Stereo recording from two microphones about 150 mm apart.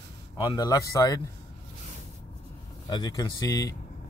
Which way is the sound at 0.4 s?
25° left (ahead or behind).